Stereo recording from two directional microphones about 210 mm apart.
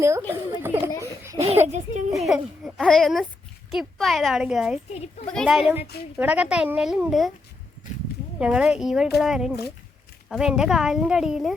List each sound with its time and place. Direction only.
0.0 s speech: 10° right (ahead or behind)
1.2 s a sound: 15° right (ahead or behind)
1.6 s a child's voice: 35° right (ahead or behind)
2.1 s a woman's voice: centre (ahead or behind)
8.4 s a woman's voice: 5° right (ahead or behind)